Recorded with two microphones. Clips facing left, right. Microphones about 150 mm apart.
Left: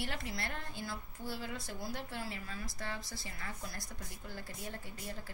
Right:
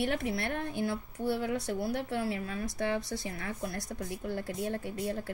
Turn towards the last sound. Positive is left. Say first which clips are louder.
# right 11 dB
turn(degrees=-65)  # may be behind; listen again after turning